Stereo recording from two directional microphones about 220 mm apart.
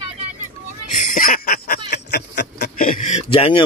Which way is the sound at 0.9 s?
35° left (ahead or behind).